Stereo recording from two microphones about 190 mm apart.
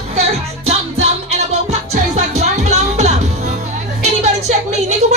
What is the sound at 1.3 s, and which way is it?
Music, 35° right (ahead or behind).